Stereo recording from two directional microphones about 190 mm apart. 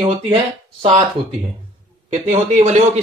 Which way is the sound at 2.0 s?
35° right (ahead or behind).